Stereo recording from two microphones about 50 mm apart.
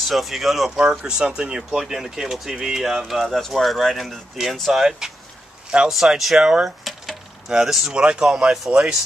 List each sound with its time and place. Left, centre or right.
0.0 s speech: centre
0.7 s speech: centre
5.9 s speech: centre
6.8 s coin: centre
7.4 s speech: centre
7.9 s speech: centre